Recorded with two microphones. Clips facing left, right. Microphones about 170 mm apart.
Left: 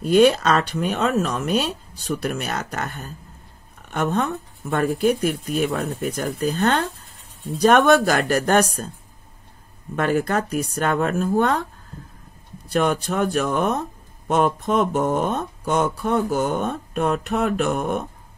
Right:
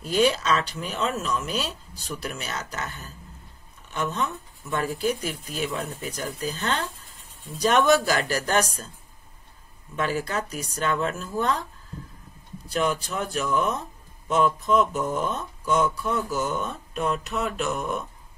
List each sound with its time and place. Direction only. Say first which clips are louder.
0.0 s speech: left 7 dB; 60° left (ahead or behind)
9.9 s speech: left 6 dB; 55° left (ahead or behind)
12.6 s speech: left 5 dB; 60° left (ahead or behind)